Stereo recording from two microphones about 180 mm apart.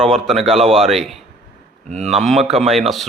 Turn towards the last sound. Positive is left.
turn(degrees=0)  # may be behind; listen again after turning